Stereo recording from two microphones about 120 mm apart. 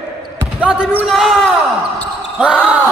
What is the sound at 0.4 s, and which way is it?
Speech, 10° right (ahead or behind).